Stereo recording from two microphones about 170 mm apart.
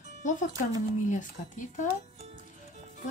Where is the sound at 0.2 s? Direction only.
45° left (ahead or behind).